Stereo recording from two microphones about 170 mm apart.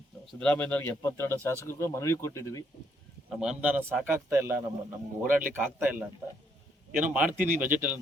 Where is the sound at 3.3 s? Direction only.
5° right (ahead or behind).